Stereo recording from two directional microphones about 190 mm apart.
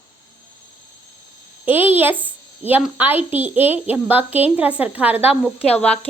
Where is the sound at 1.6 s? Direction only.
10° right (ahead or behind).